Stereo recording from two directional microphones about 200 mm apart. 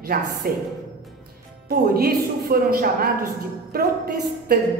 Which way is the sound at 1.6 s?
50° right (ahead or behind).